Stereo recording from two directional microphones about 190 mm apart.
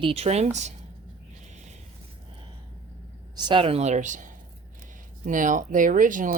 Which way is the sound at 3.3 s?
25° right (ahead or behind).